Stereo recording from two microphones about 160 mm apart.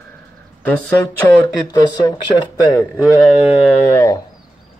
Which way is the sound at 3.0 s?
10° right (ahead or behind).